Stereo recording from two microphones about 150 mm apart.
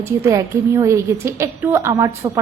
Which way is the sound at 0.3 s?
20° right (ahead or behind).